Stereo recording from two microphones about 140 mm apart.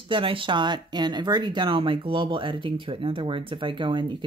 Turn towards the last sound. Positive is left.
turn(degrees=-35)  # may be behind; listen again after turning